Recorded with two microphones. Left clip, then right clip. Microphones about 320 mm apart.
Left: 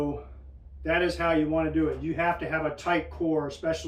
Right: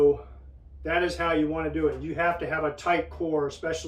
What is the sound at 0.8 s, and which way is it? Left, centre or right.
Speech, centre.